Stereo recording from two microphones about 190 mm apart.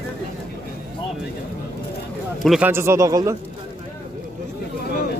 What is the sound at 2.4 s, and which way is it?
Speech, centre (ahead or behind).